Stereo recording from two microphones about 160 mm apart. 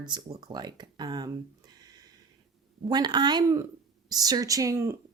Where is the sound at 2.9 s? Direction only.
25° right (ahead or behind).